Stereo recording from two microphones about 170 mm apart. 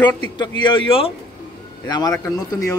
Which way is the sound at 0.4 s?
30° left (ahead or behind).